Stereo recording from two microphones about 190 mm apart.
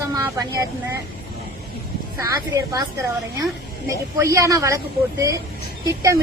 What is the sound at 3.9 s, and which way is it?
Speech, 15° right (ahead or behind).